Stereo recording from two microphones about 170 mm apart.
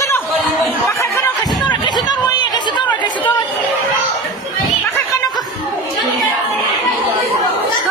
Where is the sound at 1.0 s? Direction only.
15° left (ahead or behind).